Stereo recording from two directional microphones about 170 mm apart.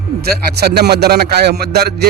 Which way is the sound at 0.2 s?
70° right (ahead or behind).